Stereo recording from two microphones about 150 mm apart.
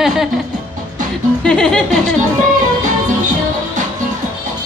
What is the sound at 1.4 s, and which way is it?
Music, 5° left (ahead or behind).